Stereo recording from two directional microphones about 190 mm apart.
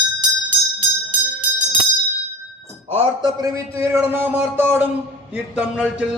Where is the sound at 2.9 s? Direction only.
30° right (ahead or behind).